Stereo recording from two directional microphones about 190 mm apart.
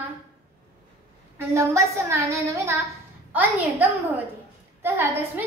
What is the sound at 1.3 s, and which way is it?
A woman's voice, 15° right (ahead or behind).